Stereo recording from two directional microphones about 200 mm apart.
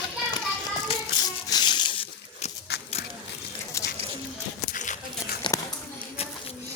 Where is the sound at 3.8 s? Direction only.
15° left (ahead or behind).